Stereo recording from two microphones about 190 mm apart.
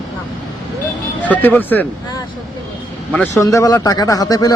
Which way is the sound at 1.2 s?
10° left (ahead or behind).